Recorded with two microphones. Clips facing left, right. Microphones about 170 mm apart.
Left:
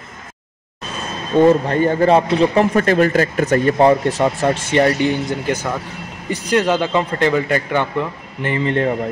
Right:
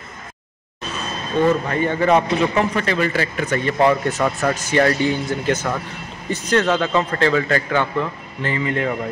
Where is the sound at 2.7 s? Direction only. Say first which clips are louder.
Left 6 dB; 45° left (ahead or behind).